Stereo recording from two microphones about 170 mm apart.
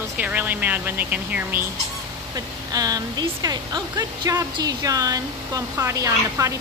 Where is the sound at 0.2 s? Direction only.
10° right (ahead or behind).